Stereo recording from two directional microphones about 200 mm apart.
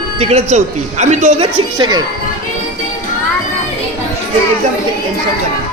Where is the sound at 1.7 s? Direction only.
20° right (ahead or behind).